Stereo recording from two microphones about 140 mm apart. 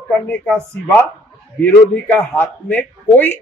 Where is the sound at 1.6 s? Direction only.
15° left (ahead or behind).